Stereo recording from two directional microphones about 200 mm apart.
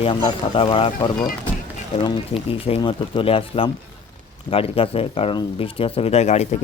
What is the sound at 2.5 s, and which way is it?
Speech, 25° left (ahead or behind).